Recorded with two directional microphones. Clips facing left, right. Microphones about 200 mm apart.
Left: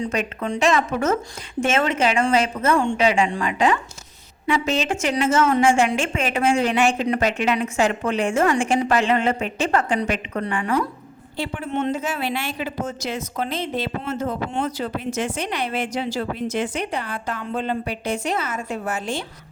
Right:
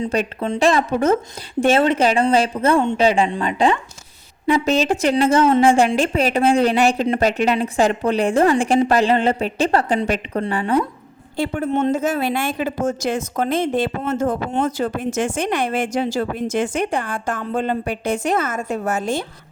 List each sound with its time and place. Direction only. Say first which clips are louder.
0.0 s a woman's voice: right 3 dB; 30° right (ahead or behind)
4.4 s a woman's voice: right 5 dB; 40° right (ahead or behind)
11.3 s speech: right 5 dB; 45° right (ahead or behind)